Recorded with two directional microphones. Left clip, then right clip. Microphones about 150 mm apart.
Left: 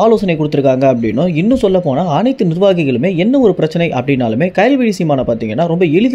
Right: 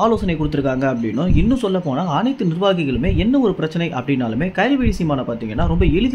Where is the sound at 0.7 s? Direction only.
35° left (ahead or behind).